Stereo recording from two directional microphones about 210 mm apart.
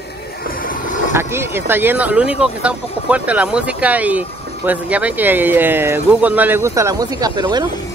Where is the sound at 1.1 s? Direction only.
10° right (ahead or behind).